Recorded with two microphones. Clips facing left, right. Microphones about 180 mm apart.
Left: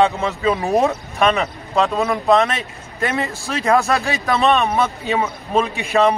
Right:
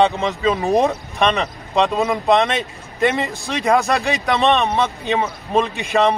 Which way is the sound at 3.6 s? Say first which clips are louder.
Even; centre (ahead or behind).